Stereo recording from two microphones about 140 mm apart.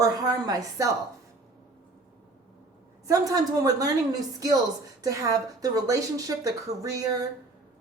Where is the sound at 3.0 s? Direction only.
25° right (ahead or behind).